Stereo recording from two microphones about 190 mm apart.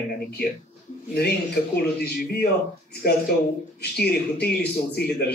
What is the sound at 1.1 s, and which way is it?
A man's voice, 55° left (ahead or behind).